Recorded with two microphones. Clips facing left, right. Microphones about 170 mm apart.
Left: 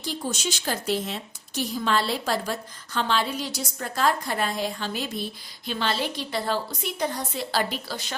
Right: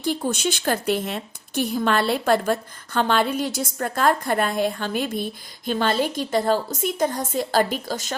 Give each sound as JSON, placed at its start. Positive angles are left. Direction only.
{"t": 0.0, "sound": "a woman's voice", "side_deg": -55}